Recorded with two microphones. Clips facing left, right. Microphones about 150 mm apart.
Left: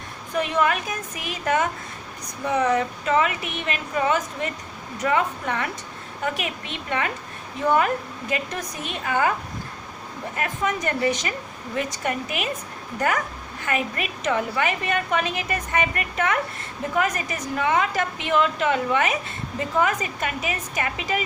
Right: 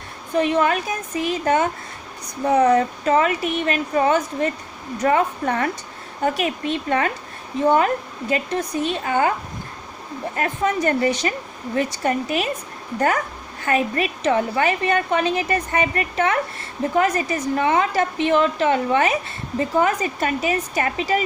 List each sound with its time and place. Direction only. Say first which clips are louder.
0.3 s a woman's voice: right 4 dB; 30° right (ahead or behind)
7.6 s a woman's voice: right 3 dB; 30° right (ahead or behind)
10.3 s a woman's voice: right 4 dB; 35° right (ahead or behind)